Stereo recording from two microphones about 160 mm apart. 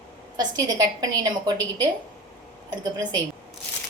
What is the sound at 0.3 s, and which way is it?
A woman's voice, 25° right (ahead or behind).